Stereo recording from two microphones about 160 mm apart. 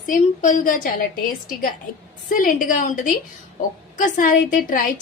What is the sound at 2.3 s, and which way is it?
A woman's voice, 60° left (ahead or behind).